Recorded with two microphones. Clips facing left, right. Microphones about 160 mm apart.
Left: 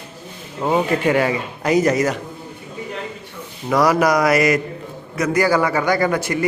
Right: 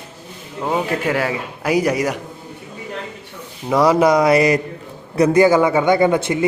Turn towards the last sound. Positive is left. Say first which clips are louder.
# right 4 dB
turn(degrees=-20)  # may be behind; listen again after turning